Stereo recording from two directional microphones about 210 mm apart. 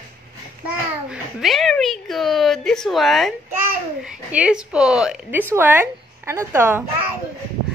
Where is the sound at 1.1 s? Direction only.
Centre (ahead or behind).